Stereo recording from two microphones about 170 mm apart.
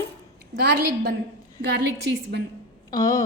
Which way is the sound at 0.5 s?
70° right (ahead or behind).